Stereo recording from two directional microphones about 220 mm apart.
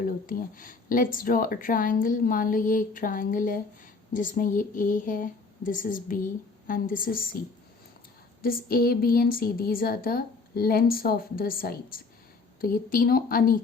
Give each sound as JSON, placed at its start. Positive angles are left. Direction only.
{"t": 0.0, "sound": "speech", "side_deg": 40}
{"t": 8.4, "sound": "a woman's voice", "side_deg": 40}